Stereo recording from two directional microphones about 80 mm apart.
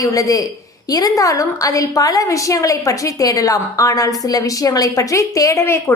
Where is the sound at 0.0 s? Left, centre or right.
Left.